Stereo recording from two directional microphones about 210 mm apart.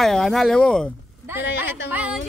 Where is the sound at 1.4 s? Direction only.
10° right (ahead or behind).